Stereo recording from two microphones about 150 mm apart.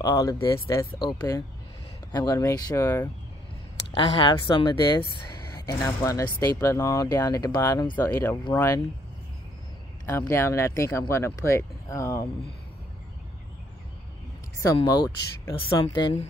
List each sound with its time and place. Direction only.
0.0 s speech: 25° left (ahead or behind)
3.9 s speech: 30° left (ahead or behind)
10.0 s speech: 20° left (ahead or behind)
14.8 s speech: 25° left (ahead or behind)